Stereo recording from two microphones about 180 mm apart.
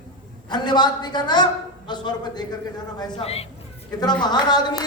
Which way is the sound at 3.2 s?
35° left (ahead or behind).